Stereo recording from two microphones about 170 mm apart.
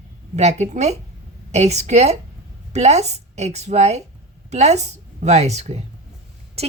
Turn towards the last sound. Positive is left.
turn(degrees=-40)  # may be behind; listen again after turning